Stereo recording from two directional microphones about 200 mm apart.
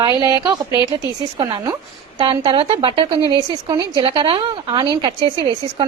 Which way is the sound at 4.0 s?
25° right (ahead or behind).